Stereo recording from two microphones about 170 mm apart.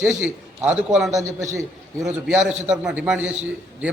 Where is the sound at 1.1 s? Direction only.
20° right (ahead or behind).